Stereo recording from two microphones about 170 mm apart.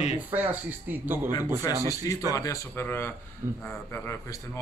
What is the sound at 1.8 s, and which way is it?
Speech, 20° left (ahead or behind).